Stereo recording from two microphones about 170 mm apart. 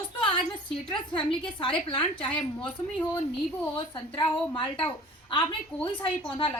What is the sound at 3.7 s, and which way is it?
A woman's voice, 30° left (ahead or behind).